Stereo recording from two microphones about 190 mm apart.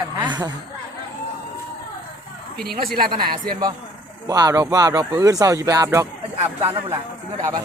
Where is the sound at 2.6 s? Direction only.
55° right (ahead or behind).